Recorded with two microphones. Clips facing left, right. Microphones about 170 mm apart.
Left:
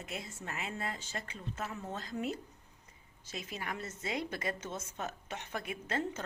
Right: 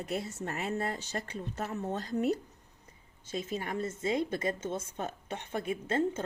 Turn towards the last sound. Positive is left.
turn(degrees=-30)  # may be behind; listen again after turning